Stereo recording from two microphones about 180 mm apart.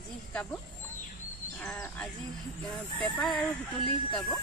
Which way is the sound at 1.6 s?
5° left (ahead or behind).